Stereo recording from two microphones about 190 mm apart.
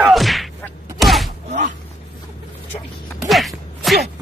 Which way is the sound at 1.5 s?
40° right (ahead or behind).